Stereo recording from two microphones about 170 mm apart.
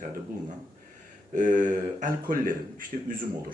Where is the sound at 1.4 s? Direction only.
50° right (ahead or behind).